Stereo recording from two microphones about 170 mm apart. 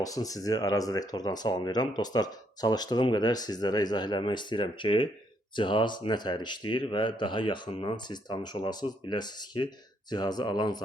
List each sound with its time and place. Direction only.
0.0 s speech: 20° left (ahead or behind)